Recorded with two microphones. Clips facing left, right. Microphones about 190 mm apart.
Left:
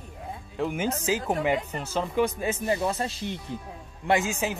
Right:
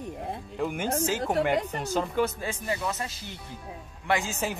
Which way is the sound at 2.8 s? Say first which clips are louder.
Left 5 dB; 30° left (ahead or behind).